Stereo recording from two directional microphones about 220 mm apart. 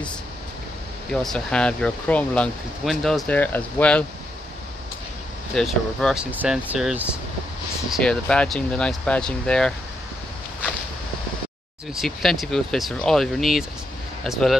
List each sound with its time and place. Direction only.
1.2 s speech: 5° left (ahead or behind)
5.5 s speech: 5° left (ahead or behind)
11.9 s speech: centre (ahead or behind)